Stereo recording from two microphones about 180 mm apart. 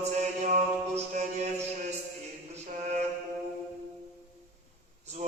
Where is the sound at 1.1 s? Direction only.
40° right (ahead or behind).